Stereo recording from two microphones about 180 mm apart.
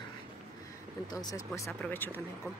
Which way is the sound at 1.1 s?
20° left (ahead or behind).